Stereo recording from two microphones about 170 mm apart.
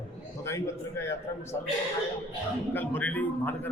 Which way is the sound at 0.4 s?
15° left (ahead or behind).